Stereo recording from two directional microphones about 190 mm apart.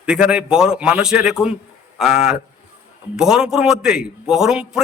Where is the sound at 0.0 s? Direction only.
5° right (ahead or behind).